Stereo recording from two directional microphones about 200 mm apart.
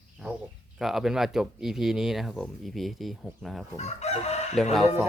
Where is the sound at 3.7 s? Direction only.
35° left (ahead or behind).